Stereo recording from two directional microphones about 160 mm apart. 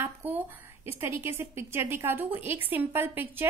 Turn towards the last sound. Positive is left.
turn(degrees=-15)  # may be behind; listen again after turning